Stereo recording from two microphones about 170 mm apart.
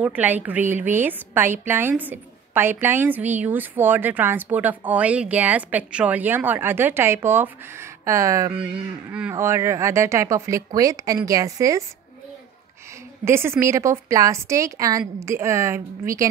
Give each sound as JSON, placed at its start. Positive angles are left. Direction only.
{"t": 0.0, "sound": "a woman's voice", "side_deg": -10}
{"t": 8.5, "sound": "a woman's voice", "side_deg": -5}
{"t": 13.2, "sound": "a woman's voice", "side_deg": -15}